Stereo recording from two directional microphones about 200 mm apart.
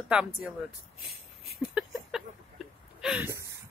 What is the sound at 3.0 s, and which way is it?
Speech, 5° right (ahead or behind).